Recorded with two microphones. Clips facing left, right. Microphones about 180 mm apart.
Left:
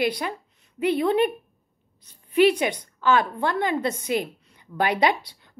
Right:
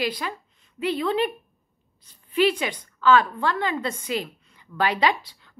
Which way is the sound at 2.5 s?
20° left (ahead or behind).